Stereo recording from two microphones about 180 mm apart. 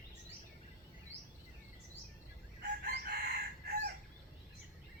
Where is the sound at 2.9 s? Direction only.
55° right (ahead or behind).